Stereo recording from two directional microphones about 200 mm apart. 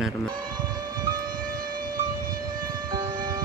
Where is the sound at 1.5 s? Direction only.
45° right (ahead or behind).